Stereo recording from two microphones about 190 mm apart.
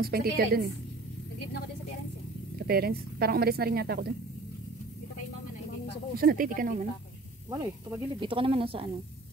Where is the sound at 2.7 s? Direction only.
55° right (ahead or behind).